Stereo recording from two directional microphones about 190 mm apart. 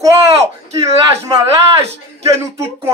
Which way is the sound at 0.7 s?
20° right (ahead or behind).